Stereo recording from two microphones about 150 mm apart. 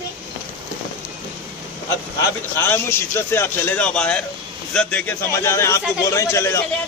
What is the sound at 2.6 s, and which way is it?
A man's voice, 15° left (ahead or behind).